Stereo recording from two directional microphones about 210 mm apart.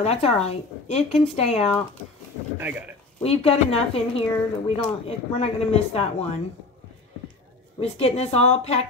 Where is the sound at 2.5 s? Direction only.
10° right (ahead or behind).